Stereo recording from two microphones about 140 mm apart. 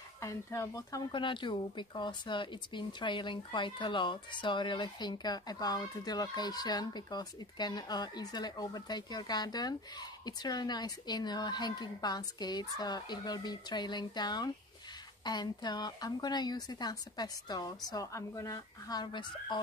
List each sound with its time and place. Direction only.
0.2 s speech: 20° left (ahead or behind)
1.1 s speech: 35° left (ahead or behind)